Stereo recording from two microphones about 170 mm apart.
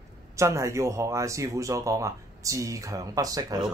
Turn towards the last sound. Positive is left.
turn(degrees=-20)  # may be behind; listen again after turning